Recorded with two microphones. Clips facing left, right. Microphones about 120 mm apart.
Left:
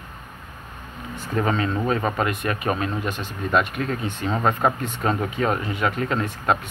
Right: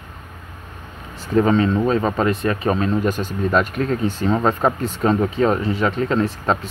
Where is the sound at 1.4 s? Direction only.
30° right (ahead or behind).